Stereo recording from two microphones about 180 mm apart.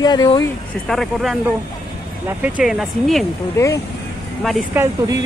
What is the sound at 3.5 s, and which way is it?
Speech, 15° left (ahead or behind).